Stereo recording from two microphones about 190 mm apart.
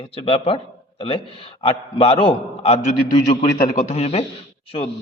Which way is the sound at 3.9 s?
35° left (ahead or behind).